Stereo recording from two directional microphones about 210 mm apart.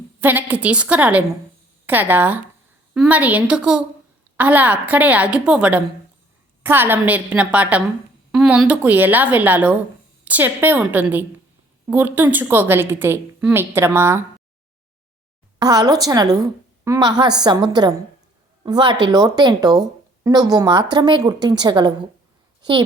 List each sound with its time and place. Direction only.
0.2 s a woman's voice: 10° right (ahead or behind)
15.5 s a woman's voice: 20° right (ahead or behind)